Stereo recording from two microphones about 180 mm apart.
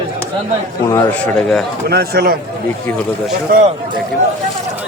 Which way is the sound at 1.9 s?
60° right (ahead or behind).